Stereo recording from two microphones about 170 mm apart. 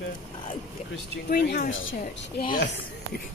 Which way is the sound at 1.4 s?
80° left.